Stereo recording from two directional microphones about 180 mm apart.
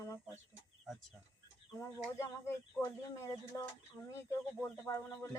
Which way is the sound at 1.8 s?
15° left (ahead or behind).